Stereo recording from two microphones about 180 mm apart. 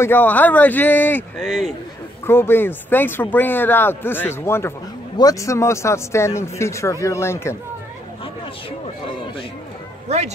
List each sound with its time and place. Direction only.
0.0 s speech: 10° left (ahead or behind)
2.2 s speech: 15° left (ahead or behind)
10.0 s speech: 35° right (ahead or behind)